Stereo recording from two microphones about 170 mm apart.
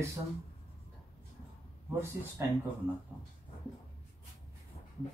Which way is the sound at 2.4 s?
15° right (ahead or behind).